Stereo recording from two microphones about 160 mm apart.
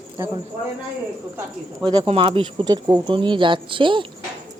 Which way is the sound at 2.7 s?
25° right (ahead or behind).